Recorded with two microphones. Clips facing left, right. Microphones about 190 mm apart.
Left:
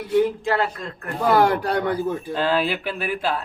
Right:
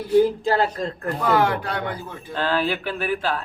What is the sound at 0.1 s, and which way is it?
Speech, 35° right (ahead or behind).